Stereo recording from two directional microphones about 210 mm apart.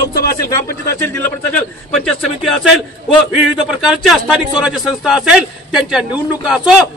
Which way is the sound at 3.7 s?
Centre (ahead or behind).